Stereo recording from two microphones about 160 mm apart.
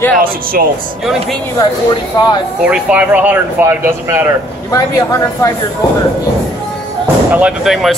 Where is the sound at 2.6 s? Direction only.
10° right (ahead or behind).